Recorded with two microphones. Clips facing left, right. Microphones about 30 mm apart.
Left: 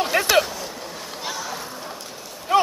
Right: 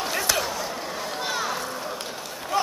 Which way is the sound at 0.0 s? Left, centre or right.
Left.